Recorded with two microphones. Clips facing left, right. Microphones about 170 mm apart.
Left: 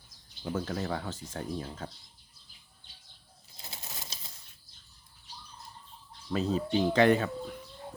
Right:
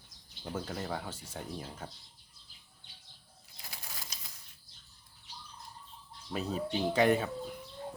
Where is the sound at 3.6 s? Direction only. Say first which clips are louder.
Left 3 dB; 25° left (ahead or behind).